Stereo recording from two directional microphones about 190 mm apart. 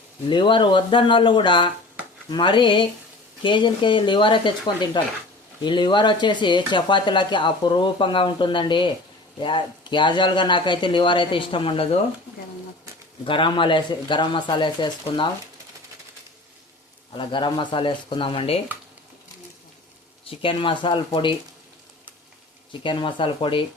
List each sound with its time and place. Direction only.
0.3 s speech: 25° left (ahead or behind)
13.2 s speech: 25° left (ahead or behind)
17.2 s speech: 25° left (ahead or behind)
20.4 s speech: 25° left (ahead or behind)
22.8 s speech: 25° left (ahead or behind)